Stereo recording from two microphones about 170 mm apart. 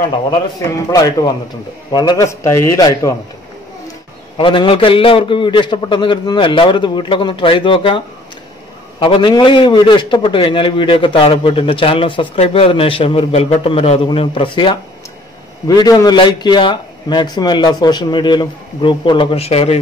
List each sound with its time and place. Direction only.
0.8 s a man's voice: 20° left (ahead or behind)
4.4 s a man's voice: 30° left (ahead or behind)
9.0 s a man's voice: 30° left (ahead or behind)